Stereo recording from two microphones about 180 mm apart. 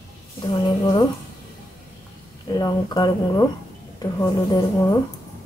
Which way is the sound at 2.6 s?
20° left (ahead or behind).